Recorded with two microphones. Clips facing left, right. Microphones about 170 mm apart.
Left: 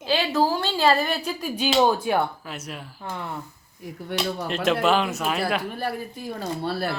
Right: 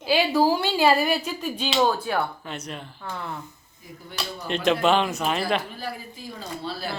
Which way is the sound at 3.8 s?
70° left (ahead or behind).